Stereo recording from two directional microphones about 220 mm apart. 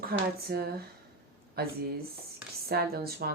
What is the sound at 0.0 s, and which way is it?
Speech, 45° right (ahead or behind).